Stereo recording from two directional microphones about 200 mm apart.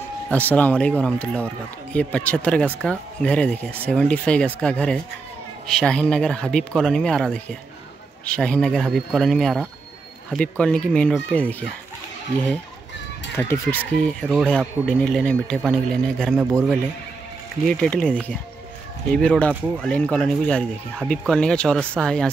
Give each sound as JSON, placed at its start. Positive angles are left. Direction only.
{"t": 0.3, "sound": "a man's voice", "side_deg": 10}
{"t": 13.4, "sound": "speech", "side_deg": 10}
{"t": 17.6, "sound": "speech", "side_deg": 5}
{"t": 19.1, "sound": "speech", "side_deg": 5}